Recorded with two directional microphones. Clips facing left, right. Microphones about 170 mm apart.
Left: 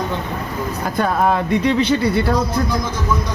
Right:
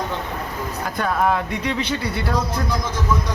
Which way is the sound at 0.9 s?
30° left (ahead or behind).